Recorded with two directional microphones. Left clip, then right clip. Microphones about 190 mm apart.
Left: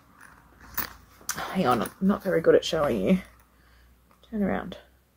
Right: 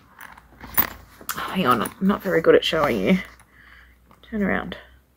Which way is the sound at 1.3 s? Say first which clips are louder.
Right 4 dB; centre (ahead or behind).